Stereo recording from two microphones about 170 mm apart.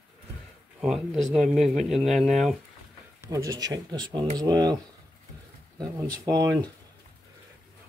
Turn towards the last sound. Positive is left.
turn(degrees=-20)  # may be behind; listen again after turning